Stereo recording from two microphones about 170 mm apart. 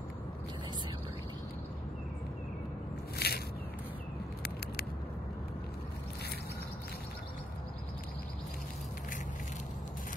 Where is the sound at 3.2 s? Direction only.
70° left (ahead or behind).